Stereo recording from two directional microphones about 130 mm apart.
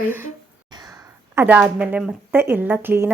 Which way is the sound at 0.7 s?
30° right (ahead or behind).